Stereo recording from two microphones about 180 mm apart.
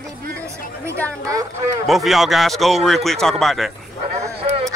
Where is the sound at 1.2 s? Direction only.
20° right (ahead or behind).